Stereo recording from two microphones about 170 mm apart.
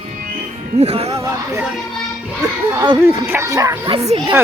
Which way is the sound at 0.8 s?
35° right (ahead or behind).